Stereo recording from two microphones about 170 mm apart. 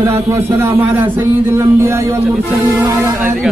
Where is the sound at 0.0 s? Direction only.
15° right (ahead or behind).